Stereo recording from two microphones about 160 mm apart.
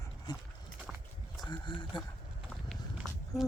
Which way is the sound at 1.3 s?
25° left (ahead or behind).